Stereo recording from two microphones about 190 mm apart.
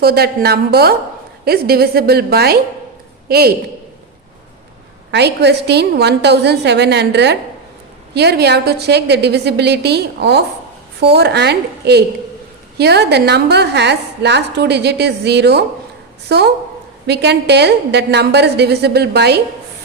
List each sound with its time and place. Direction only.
0.0 s a woman's voice: 55° right (ahead or behind)
5.1 s a woman's voice: 60° right (ahead or behind)